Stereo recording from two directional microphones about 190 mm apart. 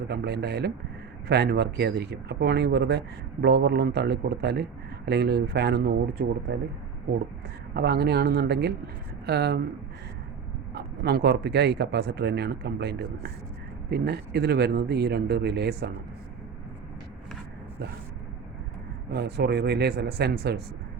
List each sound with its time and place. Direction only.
0.1 s a man's voice: 60° right (ahead or behind)
7.7 s a man's voice: 60° right (ahead or behind)
10.8 s a man's voice: 60° right (ahead or behind)
19.1 s a man's voice: 60° right (ahead or behind)